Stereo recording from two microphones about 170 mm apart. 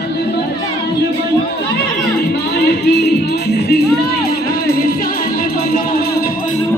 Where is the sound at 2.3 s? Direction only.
80° left; by 6.3 s 65° left (ahead or behind).